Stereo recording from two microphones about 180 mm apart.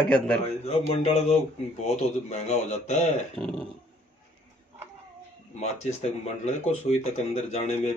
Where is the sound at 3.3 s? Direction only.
5° left (ahead or behind).